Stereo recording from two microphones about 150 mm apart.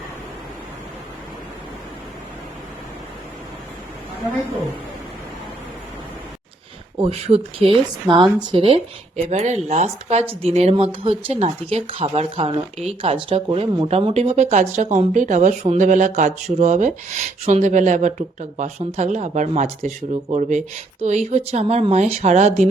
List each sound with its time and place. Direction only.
7.0 s speech: 45° right (ahead or behind)